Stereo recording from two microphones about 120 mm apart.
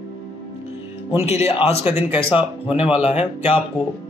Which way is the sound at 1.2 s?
60° left (ahead or behind).